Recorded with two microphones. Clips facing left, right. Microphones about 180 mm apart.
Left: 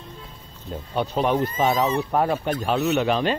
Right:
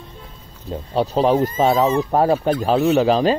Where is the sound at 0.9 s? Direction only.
35° right (ahead or behind).